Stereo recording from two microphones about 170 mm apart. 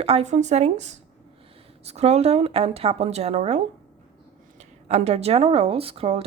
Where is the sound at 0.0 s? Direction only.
35° right (ahead or behind).